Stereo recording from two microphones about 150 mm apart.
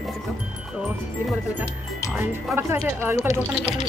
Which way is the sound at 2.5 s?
15° right (ahead or behind).